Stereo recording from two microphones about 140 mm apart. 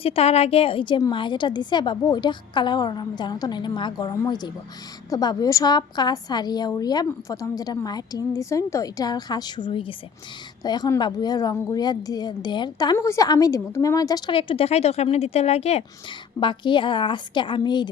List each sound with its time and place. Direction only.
0.0 s a woman's voice: 45° left (ahead or behind)
16.4 s a woman's voice: 35° left (ahead or behind)